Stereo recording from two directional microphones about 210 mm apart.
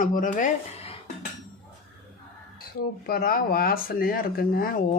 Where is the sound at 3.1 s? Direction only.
45° left (ahead or behind).